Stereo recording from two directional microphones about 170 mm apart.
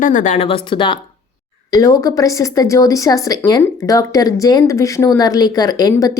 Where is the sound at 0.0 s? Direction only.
50° left (ahead or behind).